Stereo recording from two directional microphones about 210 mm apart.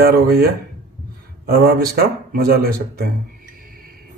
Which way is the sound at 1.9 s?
45° right (ahead or behind).